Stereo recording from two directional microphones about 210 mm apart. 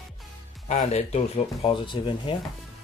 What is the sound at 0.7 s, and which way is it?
Speech, 30° left (ahead or behind).